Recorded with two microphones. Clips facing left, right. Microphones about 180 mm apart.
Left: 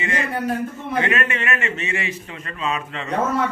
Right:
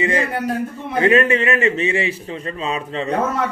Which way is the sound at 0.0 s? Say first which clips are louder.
Right 4 dB; 30° right (ahead or behind).